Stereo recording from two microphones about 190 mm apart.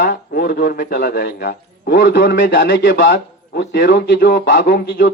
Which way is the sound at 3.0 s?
85° left.